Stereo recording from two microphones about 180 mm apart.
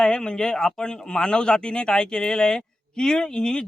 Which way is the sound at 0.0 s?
5° left (ahead or behind).